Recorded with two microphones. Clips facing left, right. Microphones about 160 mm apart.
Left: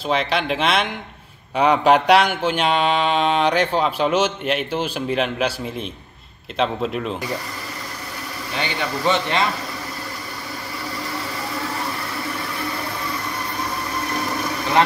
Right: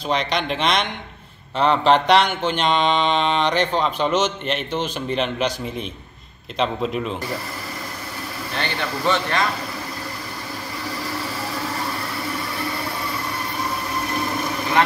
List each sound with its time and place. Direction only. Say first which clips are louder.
0.1 s a man's voice: left 2 dB; 5° left (ahead or behind)
1.6 s mantra: left 1 dB; 10° left (ahead or behind)
6.6 s a man's voice: left 1 dB; centre (ahead or behind)
8.5 s speech: left 1 dB; 15° left (ahead or behind)